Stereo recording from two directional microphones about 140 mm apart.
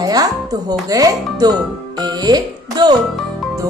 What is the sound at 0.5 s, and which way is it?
Speech, 25° right (ahead or behind).